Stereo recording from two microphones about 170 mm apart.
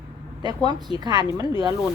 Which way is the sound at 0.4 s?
25° right (ahead or behind).